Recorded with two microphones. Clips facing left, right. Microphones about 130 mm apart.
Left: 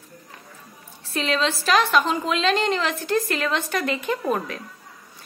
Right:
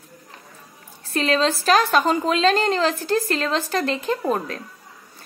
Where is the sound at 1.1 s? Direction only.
40° right (ahead or behind).